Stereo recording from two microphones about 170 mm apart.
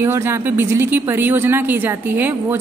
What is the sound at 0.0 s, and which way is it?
Speech, 15° right (ahead or behind).